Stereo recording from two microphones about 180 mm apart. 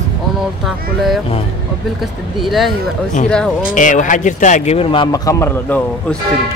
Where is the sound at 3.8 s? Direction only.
45° left (ahead or behind); by 6.2 s 10° left (ahead or behind).